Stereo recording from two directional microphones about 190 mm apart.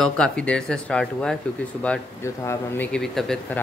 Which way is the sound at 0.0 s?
5° left (ahead or behind).